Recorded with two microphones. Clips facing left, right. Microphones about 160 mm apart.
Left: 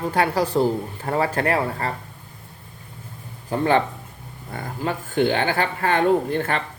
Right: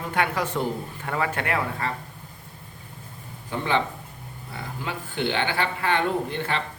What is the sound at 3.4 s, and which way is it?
Speech, 45° left (ahead or behind).